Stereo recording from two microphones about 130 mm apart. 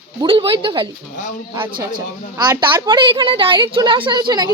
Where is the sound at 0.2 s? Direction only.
40° right (ahead or behind).